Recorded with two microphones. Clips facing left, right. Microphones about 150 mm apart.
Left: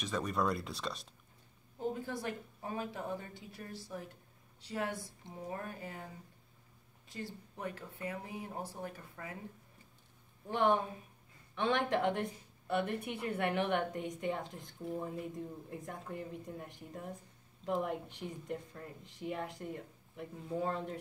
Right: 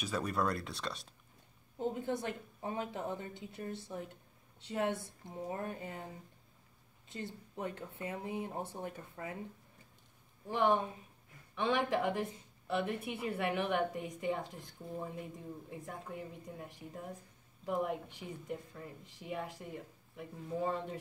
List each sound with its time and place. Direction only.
0.0 s a woman's voice: 5° right (ahead or behind)
2.0 s speech: 20° right (ahead or behind)
10.4 s a woman's voice: centre (ahead or behind)